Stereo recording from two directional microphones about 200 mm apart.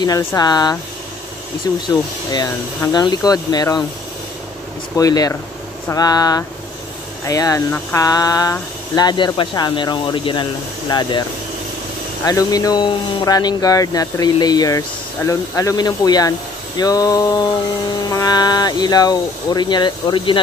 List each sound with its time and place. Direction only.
0.0 s speech: 15° left (ahead or behind)
1.9 s speech: 20° left (ahead or behind)
4.9 s speech: 20° left (ahead or behind)
12.3 s speech: 20° left (ahead or behind)